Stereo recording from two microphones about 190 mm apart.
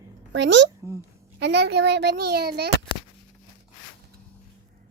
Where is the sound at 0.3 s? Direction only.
70° right (ahead or behind).